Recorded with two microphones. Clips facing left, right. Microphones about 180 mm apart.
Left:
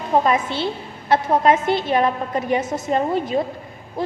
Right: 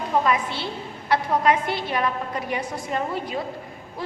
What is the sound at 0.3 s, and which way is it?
A woman's voice, 25° left (ahead or behind).